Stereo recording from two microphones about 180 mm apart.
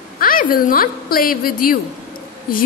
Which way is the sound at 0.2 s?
50° left (ahead or behind).